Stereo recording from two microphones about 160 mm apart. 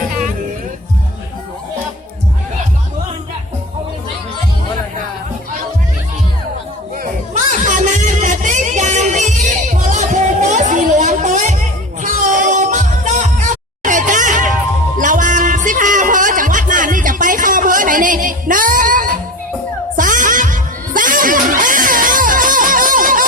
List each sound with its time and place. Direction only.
7.0 s music: 50° right (ahead or behind)